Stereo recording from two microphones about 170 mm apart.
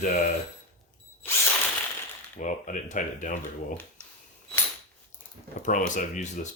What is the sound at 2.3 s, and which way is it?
Speech, 50° left (ahead or behind).